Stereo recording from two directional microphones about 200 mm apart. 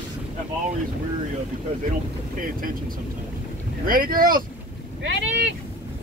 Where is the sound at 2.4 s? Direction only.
45° right (ahead or behind).